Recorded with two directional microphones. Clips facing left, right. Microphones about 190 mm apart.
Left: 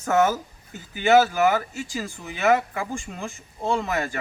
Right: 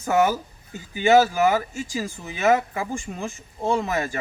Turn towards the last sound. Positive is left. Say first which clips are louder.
# right 1 dB
turn(degrees=-20)  # may be behind; listen again after turning